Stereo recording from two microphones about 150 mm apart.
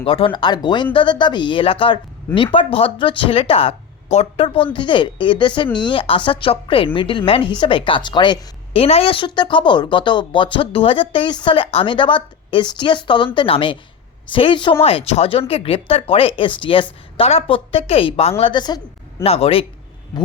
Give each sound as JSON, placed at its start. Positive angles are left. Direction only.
{"t": 0.0, "sound": "a woman's voice", "side_deg": 35}
{"t": 19.2, "sound": "a woman's voice", "side_deg": 40}